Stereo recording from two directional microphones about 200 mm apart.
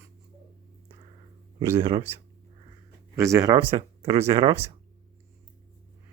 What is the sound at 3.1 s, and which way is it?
Speech, 15° right (ahead or behind).